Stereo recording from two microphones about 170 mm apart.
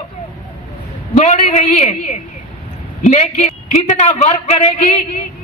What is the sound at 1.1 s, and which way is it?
A woman's voice, 40° left (ahead or behind).